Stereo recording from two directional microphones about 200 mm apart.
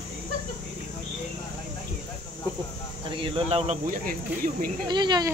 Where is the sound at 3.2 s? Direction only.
30° right (ahead or behind).